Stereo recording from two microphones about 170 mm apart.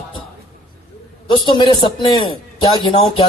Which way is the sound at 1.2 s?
30° left (ahead or behind).